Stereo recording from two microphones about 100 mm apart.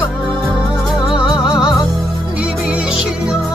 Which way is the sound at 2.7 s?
10° right (ahead or behind).